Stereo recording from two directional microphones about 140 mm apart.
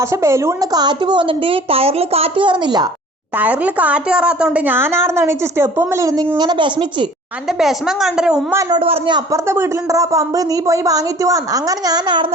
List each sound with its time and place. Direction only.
0.0 s a woman's voice: 20° right (ahead or behind)
3.3 s a woman's voice: 10° right (ahead or behind); by 7.1 s 35° right (ahead or behind)
7.6 s a woman's voice: centre (ahead or behind)
8.7 s a woman's voice: 40° right (ahead or behind)
9.3 s speech: 20° right (ahead or behind)